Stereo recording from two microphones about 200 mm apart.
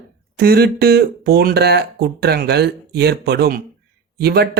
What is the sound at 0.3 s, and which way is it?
Speech, 50° right (ahead or behind).